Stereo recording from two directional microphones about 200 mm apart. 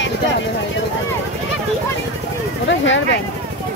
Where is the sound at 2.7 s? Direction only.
65° left (ahead or behind).